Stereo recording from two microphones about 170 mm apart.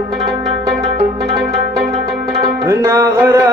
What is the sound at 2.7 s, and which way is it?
Music, 15° right (ahead or behind).